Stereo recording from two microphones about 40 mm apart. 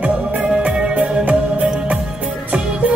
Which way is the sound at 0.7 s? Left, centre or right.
Right.